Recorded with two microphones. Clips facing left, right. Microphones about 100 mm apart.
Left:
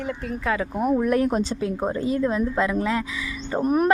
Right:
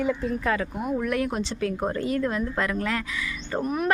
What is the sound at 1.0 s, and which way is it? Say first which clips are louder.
Speech: left 5 dB; 35° left (ahead or behind).